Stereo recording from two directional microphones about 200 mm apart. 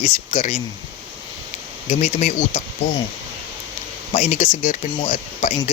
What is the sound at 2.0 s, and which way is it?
Speech, 35° left (ahead or behind).